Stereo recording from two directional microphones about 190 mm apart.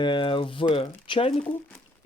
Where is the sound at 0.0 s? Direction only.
25° left (ahead or behind).